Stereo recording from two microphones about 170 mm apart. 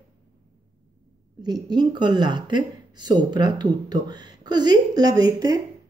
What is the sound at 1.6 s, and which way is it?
Speech, 25° right (ahead or behind).